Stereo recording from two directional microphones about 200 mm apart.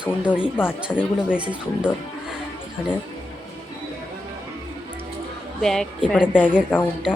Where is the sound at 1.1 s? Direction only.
5° right (ahead or behind).